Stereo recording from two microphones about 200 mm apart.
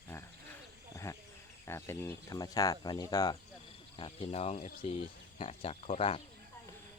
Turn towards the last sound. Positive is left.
turn(degrees=30)  # may be behind; listen again after turning